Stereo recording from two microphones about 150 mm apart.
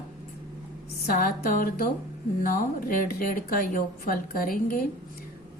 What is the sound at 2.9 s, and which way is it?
A woman's voice, 70° left (ahead or behind).